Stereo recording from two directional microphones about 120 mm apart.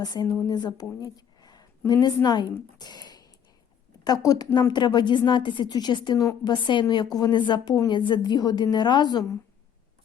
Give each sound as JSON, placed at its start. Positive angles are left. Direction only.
{"t": 0.0, "sound": "a woman's voice", "side_deg": 30}